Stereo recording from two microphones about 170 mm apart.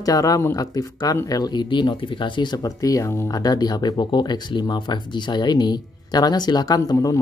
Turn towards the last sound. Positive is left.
turn(degrees=20)  # may be behind; listen again after turning